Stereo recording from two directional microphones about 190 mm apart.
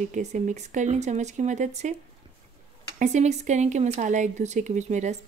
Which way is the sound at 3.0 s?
35° right (ahead or behind).